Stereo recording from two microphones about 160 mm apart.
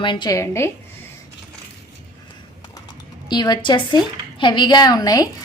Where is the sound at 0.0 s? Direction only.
30° left (ahead or behind).